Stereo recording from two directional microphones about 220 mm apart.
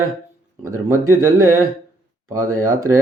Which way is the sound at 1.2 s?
15° right (ahead or behind).